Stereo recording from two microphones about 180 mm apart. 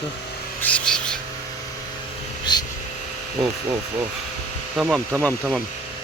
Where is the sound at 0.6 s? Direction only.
5° left (ahead or behind).